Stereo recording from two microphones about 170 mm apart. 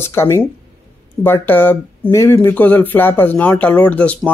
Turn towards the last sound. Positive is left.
turn(degrees=10)  # may be behind; listen again after turning